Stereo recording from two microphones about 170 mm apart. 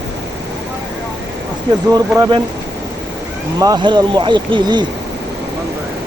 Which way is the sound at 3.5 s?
25° right (ahead or behind).